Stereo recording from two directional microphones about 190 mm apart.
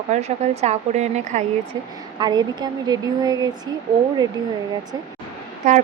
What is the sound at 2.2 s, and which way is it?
Speech, 20° right (ahead or behind).